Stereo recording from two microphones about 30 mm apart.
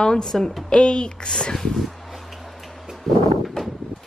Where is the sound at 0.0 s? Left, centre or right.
Left.